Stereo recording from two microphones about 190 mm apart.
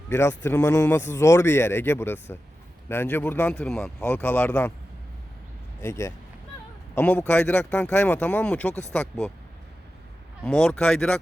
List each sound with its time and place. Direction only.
0.1 s speech: 15° left (ahead or behind)
5.8 s speech: 15° left (ahead or behind)
10.4 s speech: 5° left (ahead or behind)